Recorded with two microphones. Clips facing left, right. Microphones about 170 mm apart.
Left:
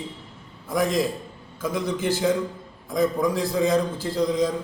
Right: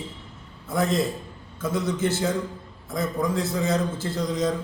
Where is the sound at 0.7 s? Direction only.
15° left (ahead or behind).